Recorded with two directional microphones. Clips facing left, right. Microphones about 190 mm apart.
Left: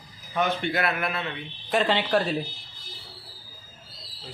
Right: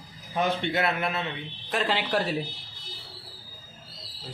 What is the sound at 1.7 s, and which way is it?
Speech, 5° right (ahead or behind).